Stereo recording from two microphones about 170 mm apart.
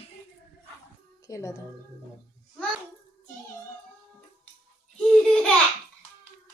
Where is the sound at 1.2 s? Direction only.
20° left (ahead or behind).